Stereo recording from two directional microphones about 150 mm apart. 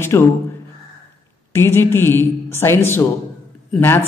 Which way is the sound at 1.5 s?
15° left (ahead or behind).